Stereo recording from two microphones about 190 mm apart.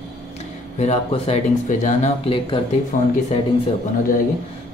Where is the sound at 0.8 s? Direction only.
35° left (ahead or behind).